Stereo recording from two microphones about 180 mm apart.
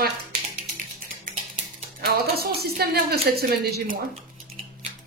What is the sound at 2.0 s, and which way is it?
A woman's voice, 60° right (ahead or behind).